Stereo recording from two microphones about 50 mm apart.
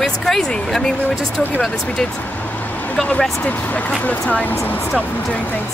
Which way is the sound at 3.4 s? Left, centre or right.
Left.